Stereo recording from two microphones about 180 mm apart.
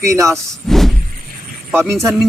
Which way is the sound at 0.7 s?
Centre (ahead or behind).